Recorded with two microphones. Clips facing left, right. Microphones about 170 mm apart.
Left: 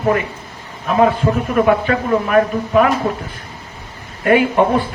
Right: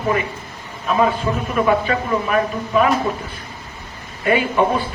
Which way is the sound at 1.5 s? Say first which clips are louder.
Left 2 dB; 65° left (ahead or behind).